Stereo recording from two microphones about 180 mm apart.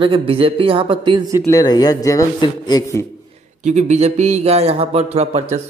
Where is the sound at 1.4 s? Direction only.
20° left (ahead or behind).